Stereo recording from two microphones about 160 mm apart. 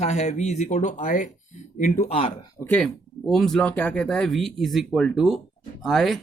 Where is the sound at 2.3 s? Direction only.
25° left (ahead or behind).